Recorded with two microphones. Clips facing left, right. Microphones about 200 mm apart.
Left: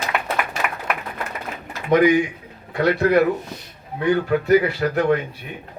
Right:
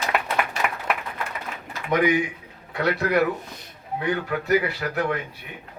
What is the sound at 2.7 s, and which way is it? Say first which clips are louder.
Speech: left 5 dB; 30° left (ahead or behind).